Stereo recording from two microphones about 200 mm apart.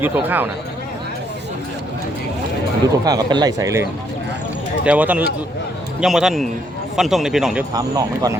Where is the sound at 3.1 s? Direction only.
20° right (ahead or behind).